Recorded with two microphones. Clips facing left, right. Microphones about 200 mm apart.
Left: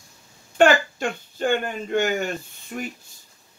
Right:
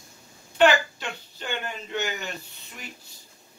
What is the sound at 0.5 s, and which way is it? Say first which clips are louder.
Speech: left 3 dB; 50° left (ahead or behind).